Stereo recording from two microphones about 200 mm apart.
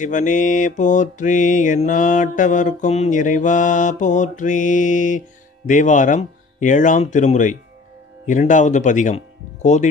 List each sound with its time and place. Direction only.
0.0 s mantra: 40° left (ahead or behind)